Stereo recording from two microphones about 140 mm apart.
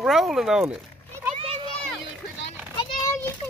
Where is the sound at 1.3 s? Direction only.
45° right (ahead or behind).